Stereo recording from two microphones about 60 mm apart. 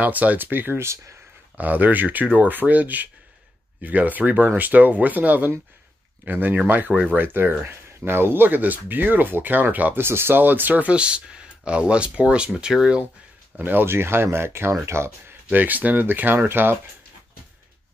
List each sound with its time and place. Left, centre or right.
0.0 s speech: right
0.7 s speech: right
1.6 s speech: right
10.0 s speech: right; by 13.0 s centre
13.6 s speech: right
15.5 s speech: right